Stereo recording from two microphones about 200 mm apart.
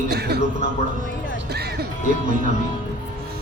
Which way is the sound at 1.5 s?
55° right (ahead or behind).